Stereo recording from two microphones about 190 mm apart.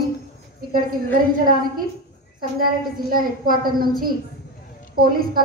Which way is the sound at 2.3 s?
50° right (ahead or behind).